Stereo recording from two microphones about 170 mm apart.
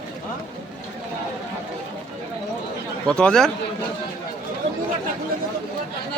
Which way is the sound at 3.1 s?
5° left (ahead or behind).